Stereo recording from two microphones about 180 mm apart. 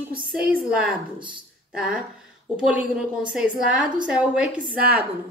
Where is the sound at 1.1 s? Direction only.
25° right (ahead or behind).